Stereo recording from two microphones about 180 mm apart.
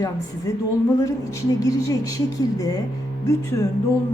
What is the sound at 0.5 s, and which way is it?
A woman's voice, 20° left (ahead or behind).